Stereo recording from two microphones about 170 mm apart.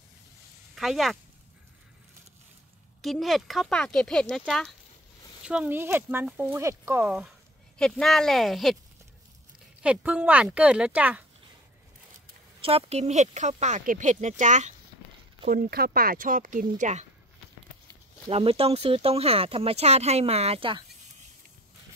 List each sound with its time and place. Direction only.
0.7 s speech: centre (ahead or behind)
3.0 s speech: centre (ahead or behind)
7.8 s speech: centre (ahead or behind)
9.8 s speech: 5° right (ahead or behind)
12.6 s speech: 35° right (ahead or behind)
15.5 s speech: 60° right (ahead or behind); by 17.0 s 45° right (ahead or behind)
18.3 s speech: 35° right (ahead or behind)